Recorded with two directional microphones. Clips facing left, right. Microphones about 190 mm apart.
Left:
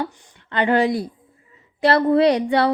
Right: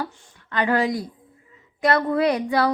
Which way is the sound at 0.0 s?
25° left (ahead or behind).